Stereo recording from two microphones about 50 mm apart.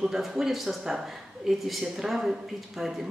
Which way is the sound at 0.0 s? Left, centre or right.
Centre.